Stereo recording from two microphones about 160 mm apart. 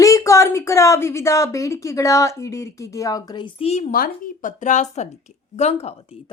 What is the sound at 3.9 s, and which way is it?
Speech, 60° left (ahead or behind).